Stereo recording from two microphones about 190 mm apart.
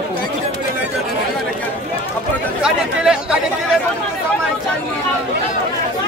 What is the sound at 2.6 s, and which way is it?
Speech, 5° right (ahead or behind).